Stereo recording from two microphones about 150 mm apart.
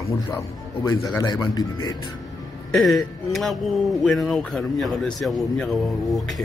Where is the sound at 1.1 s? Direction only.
25° left (ahead or behind).